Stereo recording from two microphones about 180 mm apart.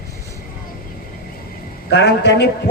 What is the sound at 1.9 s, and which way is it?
Speech, 70° left (ahead or behind).